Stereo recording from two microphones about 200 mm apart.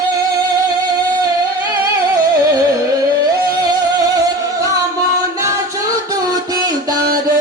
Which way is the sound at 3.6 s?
20° right (ahead or behind).